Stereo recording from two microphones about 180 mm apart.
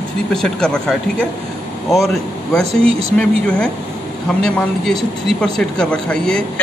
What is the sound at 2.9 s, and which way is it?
Speech, 35° right (ahead or behind).